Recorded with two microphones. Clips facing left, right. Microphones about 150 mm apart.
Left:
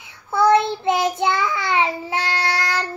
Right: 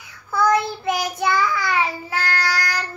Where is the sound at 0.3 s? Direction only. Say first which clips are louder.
Left 3 dB; 25° left (ahead or behind).